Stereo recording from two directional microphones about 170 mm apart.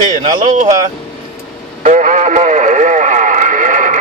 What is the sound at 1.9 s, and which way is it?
Radio, 50° right (ahead or behind).